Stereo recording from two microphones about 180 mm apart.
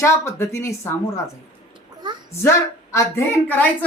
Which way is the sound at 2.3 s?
15° left (ahead or behind).